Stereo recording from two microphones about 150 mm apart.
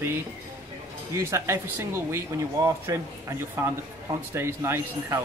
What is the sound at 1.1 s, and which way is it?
Speech, 20° right (ahead or behind).